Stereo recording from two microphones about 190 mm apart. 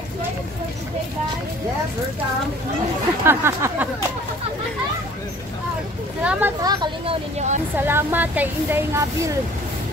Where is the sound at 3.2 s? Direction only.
15° right (ahead or behind).